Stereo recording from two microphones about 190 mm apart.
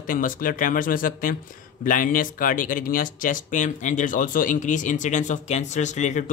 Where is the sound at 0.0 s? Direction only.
45° left (ahead or behind).